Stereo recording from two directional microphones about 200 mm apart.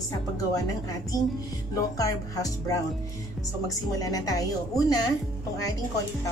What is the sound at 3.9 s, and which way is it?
Speech, 15° left (ahead or behind).